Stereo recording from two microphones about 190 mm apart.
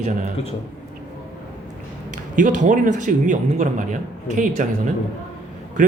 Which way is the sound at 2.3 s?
40° right (ahead or behind).